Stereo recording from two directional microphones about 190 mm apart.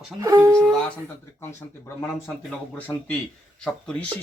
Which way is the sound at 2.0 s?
10° left (ahead or behind).